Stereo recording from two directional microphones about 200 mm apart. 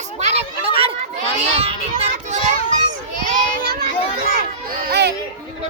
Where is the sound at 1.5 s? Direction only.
30° right (ahead or behind).